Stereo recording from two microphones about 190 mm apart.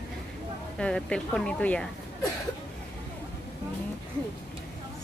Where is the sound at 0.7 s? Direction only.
5° left (ahead or behind).